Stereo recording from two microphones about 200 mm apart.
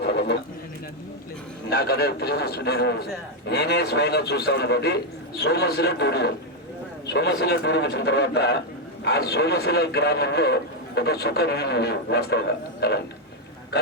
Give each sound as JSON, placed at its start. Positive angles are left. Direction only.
{"t": 0.0, "sound": "bird", "side_deg": 55}
{"t": 1.7, "sound": "a man's voice", "side_deg": 50}